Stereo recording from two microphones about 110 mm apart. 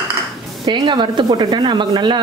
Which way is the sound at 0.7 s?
40° right (ahead or behind).